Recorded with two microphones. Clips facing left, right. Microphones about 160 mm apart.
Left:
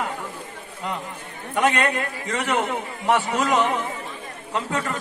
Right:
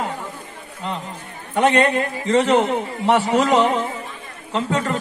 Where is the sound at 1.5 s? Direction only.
30° right (ahead or behind).